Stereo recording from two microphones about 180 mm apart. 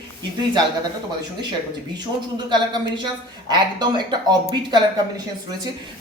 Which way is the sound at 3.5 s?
25° right (ahead or behind).